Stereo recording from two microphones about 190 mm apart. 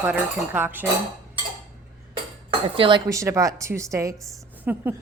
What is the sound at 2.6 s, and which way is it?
Speech, 30° right (ahead or behind).